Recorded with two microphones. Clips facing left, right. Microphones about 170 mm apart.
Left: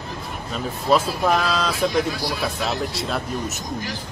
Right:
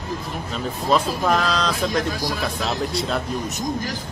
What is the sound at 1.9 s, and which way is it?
Speech, 45° right (ahead or behind).